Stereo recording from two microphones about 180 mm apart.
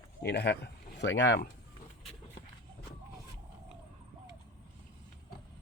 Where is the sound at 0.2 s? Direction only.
65° left (ahead or behind).